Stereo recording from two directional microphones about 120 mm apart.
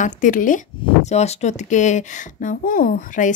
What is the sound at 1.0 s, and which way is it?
Speech, 65° left (ahead or behind).